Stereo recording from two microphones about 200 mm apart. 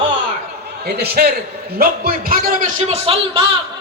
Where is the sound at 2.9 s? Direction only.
30° right (ahead or behind).